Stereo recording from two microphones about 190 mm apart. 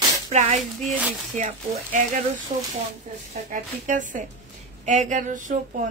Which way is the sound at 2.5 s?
40° right (ahead or behind).